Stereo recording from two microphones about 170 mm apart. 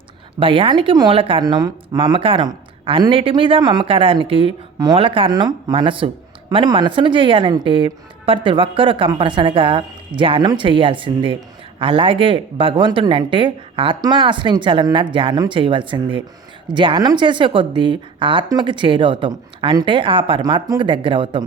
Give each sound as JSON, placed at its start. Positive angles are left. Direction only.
{"t": 0.3, "sound": "speech", "side_deg": -30}